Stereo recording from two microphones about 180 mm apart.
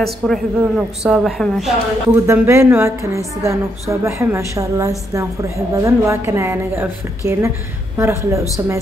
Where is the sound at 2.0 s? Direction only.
15° right (ahead or behind).